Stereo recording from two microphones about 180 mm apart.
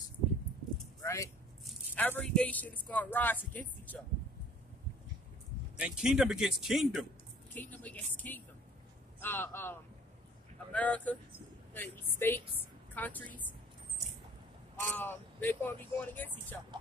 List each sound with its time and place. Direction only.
1.0 s a sound: 15° left (ahead or behind)
1.6 s a sound: centre (ahead or behind)
2.0 s speech: 10° left (ahead or behind)
5.8 s speech: 5° right (ahead or behind)
7.5 s speech: 10° left (ahead or behind)
14.8 s speech: 10° left (ahead or behind)